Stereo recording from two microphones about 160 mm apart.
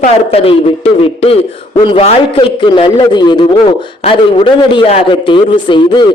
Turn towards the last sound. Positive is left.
turn(degrees=30)  # may be behind; listen again after turning